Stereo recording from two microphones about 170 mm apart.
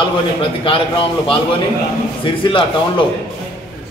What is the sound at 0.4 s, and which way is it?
A man's voice, 30° left (ahead or behind).